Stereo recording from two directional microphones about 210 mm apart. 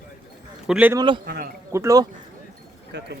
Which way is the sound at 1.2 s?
45° right (ahead or behind).